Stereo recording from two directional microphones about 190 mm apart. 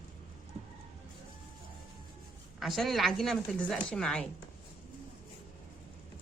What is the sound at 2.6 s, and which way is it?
A woman's voice, centre (ahead or behind).